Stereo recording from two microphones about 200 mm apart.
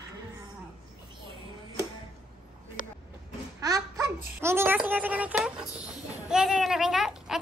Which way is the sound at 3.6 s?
15° right (ahead or behind).